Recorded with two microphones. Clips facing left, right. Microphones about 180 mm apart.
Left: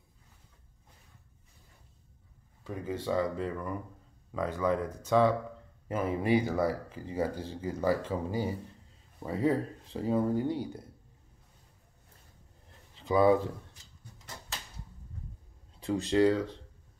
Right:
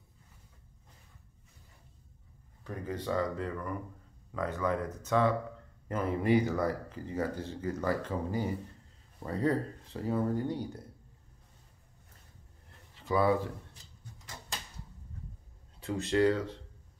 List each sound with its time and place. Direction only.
2.6 s speech: 10° left (ahead or behind)
12.9 s a sound: 20° left (ahead or behind)
16.1 s speech: 20° left (ahead or behind)